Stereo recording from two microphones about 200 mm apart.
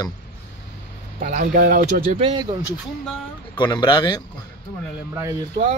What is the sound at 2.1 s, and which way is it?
Speech, 25° right (ahead or behind).